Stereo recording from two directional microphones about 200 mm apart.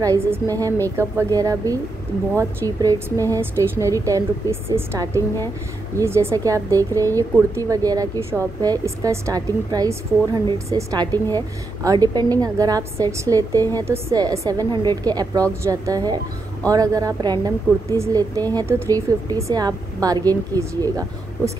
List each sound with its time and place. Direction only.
0.0 s a woman's voice: 15° right (ahead or behind)